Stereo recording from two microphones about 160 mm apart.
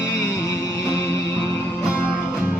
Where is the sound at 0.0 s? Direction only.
90° left.